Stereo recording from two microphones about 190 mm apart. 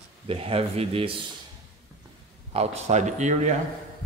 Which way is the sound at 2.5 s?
35° right (ahead or behind).